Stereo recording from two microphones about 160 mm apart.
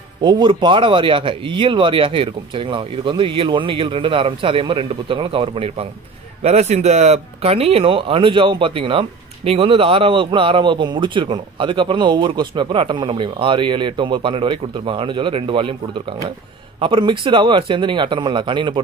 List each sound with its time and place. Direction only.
0.2 s speech: 25° right (ahead or behind)